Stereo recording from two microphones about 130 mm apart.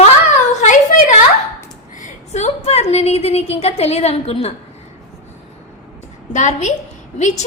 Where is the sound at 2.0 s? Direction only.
65° left (ahead or behind).